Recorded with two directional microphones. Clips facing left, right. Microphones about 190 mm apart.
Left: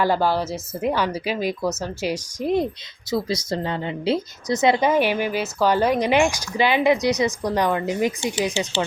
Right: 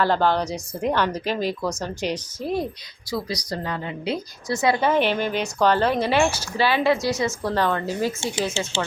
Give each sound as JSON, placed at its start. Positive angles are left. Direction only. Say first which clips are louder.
{"t": 0.0, "sound": "a woman's voice", "louder": "even", "side_deg": 10}
{"t": 3.1, "sound": "a woman's voice", "louder": "left 4 dB", "side_deg": 25}